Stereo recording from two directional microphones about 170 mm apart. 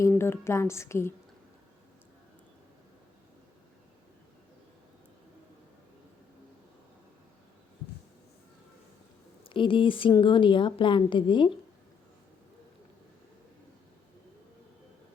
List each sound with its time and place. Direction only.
0.1 s a woman's voice: 15° left (ahead or behind)
9.4 s a woman's voice: 30° left (ahead or behind)